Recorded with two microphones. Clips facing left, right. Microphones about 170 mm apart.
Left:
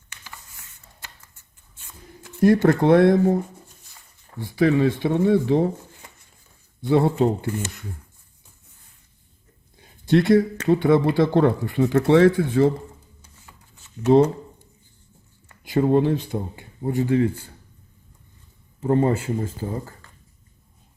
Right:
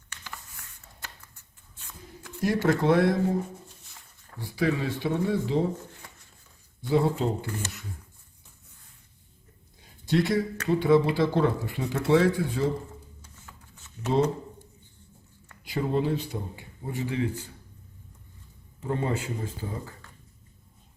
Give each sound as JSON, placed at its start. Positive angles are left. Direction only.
{"t": 2.4, "sound": "speech", "side_deg": 55}
{"t": 4.5, "sound": "speech", "side_deg": 60}
{"t": 6.8, "sound": "speech", "side_deg": 60}
{"t": 10.1, "sound": "speech", "side_deg": 60}
{"t": 15.6, "sound": "speech", "side_deg": 50}
{"t": 18.8, "sound": "speech", "side_deg": 45}